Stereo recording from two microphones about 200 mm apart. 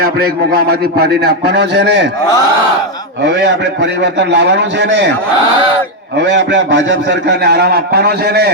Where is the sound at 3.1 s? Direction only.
60° right (ahead or behind).